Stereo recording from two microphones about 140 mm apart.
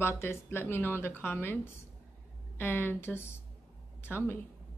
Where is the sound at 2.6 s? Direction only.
15° left (ahead or behind).